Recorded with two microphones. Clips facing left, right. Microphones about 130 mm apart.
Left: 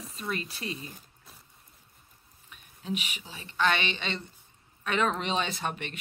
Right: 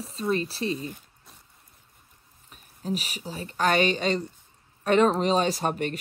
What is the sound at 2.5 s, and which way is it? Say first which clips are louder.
Speech: right 4 dB; 40° right (ahead or behind).